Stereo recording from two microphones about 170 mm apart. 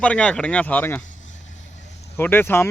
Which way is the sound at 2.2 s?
10° left (ahead or behind).